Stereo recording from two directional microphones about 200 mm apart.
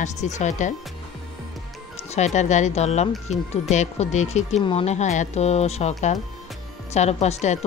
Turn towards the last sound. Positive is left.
turn(degrees=35)  # may be behind; listen again after turning